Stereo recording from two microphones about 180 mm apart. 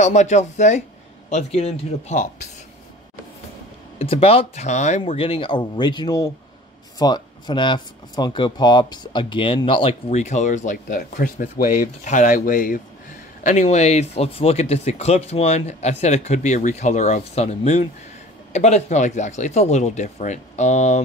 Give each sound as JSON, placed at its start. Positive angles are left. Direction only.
{"t": 0.0, "sound": "speech", "side_deg": 40}
{"t": 4.0, "sound": "speech", "side_deg": 30}